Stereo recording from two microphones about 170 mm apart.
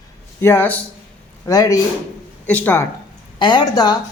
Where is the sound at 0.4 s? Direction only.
10° left (ahead or behind).